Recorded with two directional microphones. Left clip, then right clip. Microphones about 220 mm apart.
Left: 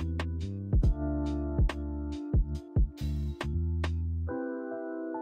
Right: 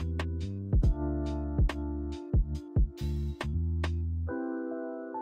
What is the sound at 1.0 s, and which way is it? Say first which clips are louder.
Music: left 2 dB; 5° left (ahead or behind).